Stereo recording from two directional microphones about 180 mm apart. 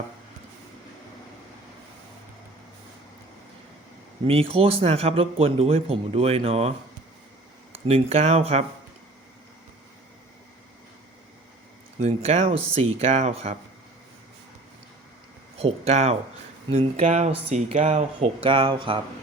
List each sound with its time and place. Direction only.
4.3 s speech: 30° right (ahead or behind)
7.9 s speech: 35° right (ahead or behind)
11.9 s speech: 35° right (ahead or behind)
15.5 s speech: 35° right (ahead or behind)
18.4 s speech: 30° right (ahead or behind)